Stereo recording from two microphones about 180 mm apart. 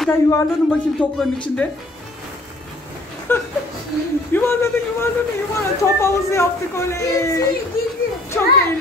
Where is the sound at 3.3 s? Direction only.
10° left (ahead or behind).